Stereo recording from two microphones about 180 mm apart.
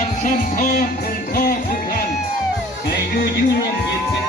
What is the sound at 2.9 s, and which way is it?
Music, 65° left (ahead or behind).